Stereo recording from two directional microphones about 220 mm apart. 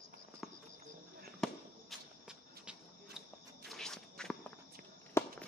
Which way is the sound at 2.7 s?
Centre (ahead or behind).